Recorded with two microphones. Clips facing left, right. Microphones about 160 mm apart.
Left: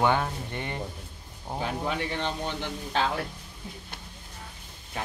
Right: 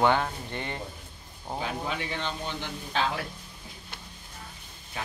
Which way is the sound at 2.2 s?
60° left (ahead or behind).